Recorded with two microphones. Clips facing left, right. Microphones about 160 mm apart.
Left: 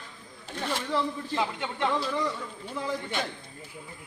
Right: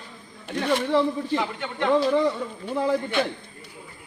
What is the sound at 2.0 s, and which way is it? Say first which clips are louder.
A man's voice: right 9 dB; 60° right (ahead or behind).